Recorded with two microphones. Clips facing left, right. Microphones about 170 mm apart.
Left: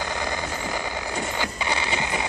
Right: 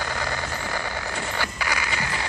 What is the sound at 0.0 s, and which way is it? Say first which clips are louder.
Vehicle: left 1 dB; 15° left (ahead or behind).